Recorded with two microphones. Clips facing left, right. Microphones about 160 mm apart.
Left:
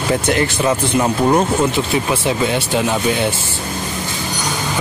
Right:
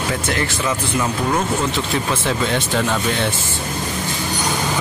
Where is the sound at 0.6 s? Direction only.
35° left (ahead or behind).